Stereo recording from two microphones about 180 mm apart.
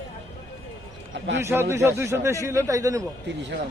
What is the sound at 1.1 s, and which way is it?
Speech, 75° right (ahead or behind).